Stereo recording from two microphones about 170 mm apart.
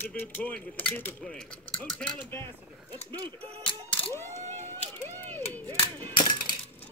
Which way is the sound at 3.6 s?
5° left (ahead or behind).